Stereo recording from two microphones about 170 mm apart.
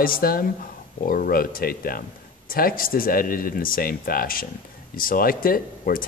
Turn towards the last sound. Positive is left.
turn(degrees=55)  # may be behind; listen again after turning